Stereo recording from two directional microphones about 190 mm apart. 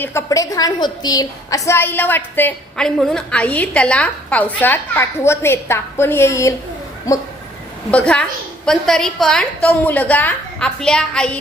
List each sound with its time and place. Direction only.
0.0 s a woman's voice: 15° left (ahead or behind)